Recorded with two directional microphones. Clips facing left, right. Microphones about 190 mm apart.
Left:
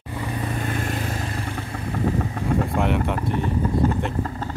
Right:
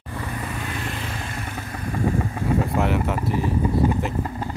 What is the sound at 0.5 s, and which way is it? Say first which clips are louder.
Vehicle: left 4 dB; 45° left (ahead or behind).